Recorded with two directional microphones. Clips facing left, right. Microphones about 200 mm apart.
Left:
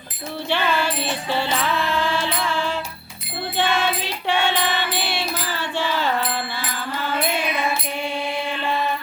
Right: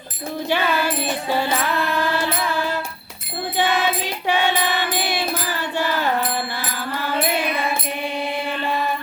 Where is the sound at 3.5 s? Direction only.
15° right (ahead or behind).